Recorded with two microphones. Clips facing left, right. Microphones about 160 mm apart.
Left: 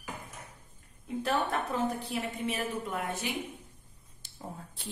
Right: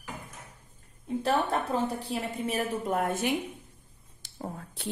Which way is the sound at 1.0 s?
35° right (ahead or behind).